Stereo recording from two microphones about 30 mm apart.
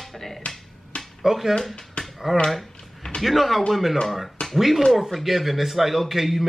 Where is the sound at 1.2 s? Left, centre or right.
Centre.